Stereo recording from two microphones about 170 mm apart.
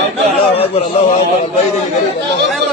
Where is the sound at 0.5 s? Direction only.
35° left (ahead or behind).